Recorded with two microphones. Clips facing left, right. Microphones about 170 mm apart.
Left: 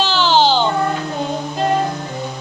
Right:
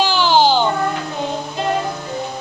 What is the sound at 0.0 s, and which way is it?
Baby cry, 10° right (ahead or behind).